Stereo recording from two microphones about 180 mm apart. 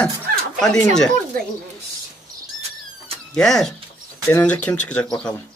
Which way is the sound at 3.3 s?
Centre (ahead or behind).